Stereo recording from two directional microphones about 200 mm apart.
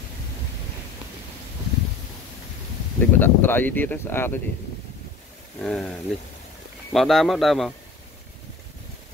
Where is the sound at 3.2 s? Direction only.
10° left (ahead or behind).